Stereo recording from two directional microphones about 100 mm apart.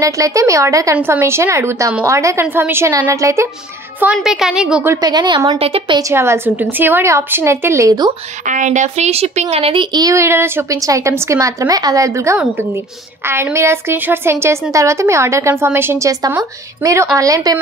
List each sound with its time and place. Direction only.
0.0 s a woman's voice: 35° right (ahead or behind)
4.0 s a woman's voice: 10° right (ahead or behind)
5.0 s a woman's voice: 50° right (ahead or behind)
5.6 s a woman's voice: 70° right (ahead or behind)
6.1 s a woman's voice: 25° right (ahead or behind)
8.9 s a woman's voice: 90° right
9.8 s a woman's voice: 40° right (ahead or behind)
10.1 s a woman's voice: 25° right (ahead or behind)